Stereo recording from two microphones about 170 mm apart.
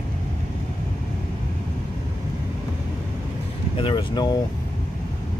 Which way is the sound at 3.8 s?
30° left (ahead or behind).